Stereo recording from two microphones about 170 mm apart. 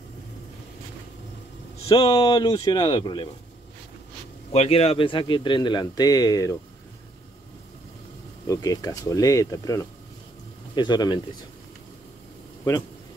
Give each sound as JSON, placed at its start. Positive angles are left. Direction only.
{"t": 1.9, "sound": "a man's voice", "side_deg": 25}
{"t": 4.5, "sound": "a man's voice", "side_deg": 35}
{"t": 8.5, "sound": "a man's voice", "side_deg": 20}